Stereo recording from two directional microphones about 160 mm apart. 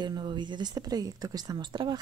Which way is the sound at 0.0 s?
30° right (ahead or behind).